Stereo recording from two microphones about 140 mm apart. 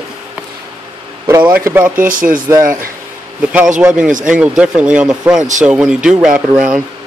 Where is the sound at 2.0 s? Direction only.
75° right (ahead or behind).